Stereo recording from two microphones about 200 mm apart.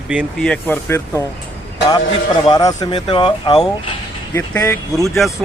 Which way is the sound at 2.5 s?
20° left (ahead or behind).